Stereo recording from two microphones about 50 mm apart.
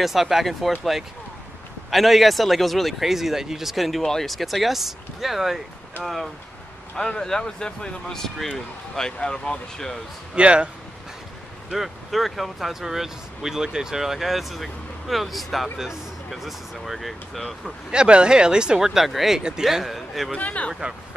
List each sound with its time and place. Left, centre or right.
0.0 s speech: centre
7.0 s speech: centre
10.3 s speech: right
11.7 s speech: centre
17.9 s speech: centre
18.9 s speech: centre
20.3 s speech: left